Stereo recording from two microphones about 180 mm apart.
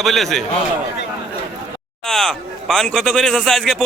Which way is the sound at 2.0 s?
Centre (ahead or behind).